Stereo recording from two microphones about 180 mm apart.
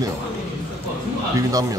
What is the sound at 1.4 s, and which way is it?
Speech, 20° right (ahead or behind).